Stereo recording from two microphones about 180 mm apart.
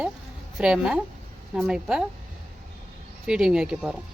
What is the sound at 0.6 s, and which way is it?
Speech, 5° right (ahead or behind).